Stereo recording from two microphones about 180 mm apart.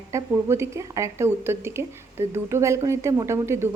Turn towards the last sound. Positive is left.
turn(degrees=-15)  # may be behind; listen again after turning